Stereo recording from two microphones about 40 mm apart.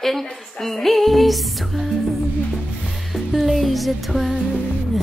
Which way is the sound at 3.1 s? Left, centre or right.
Centre.